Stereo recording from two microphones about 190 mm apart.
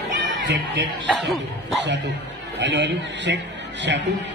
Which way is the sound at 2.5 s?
70° right (ahead or behind).